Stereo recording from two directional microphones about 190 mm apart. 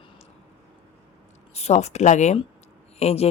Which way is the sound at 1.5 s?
35° left (ahead or behind).